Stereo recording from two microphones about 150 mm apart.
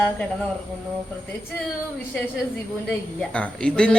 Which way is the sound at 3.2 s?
5° left (ahead or behind).